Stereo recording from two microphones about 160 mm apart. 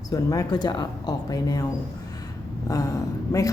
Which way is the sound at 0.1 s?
20° left (ahead or behind).